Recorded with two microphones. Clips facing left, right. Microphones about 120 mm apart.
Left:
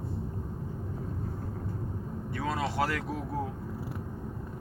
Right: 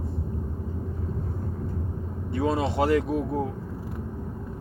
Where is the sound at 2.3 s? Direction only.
25° right (ahead or behind).